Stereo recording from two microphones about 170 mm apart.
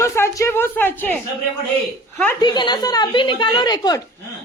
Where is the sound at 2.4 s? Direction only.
25° left (ahead or behind).